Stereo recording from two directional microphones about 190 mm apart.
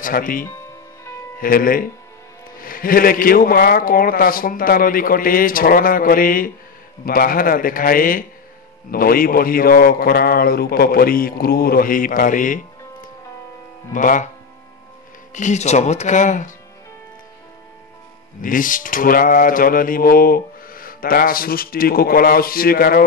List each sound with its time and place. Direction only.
0.0 s mantra: 45° left (ahead or behind)
15.3 s speech: 40° left (ahead or behind)
18.4 s mantra: 45° left (ahead or behind)